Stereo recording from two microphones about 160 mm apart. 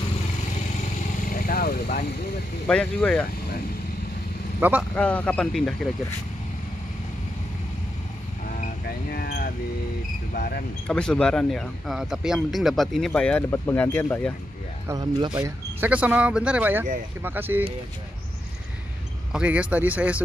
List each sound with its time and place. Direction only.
1.3 s vehicle: 65° left (ahead or behind)
2.7 s speech: 5° left (ahead or behind)
4.6 s speech: 10° right (ahead or behind)
4.9 s speech: 10° left (ahead or behind)
9.1 s speech: 70° left (ahead or behind)
10.9 s speech: 5° left (ahead or behind)
15.1 s speech: 25° right (ahead or behind)
15.8 s speech: 10° right (ahead or behind)
19.3 s speech: 10° right (ahead or behind)